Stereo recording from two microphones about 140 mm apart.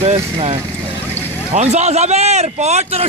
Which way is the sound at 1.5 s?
50° right (ahead or behind).